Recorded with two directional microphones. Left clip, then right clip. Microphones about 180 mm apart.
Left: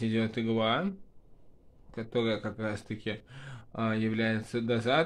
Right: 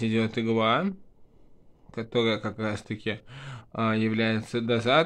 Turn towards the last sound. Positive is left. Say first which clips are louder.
# right 5 dB
turn(degrees=-30)  # may be behind; listen again after turning